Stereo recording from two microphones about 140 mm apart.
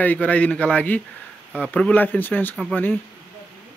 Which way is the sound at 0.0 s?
10° left (ahead or behind).